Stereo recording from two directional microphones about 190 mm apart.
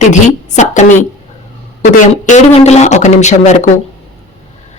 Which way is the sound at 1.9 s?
35° left (ahead or behind).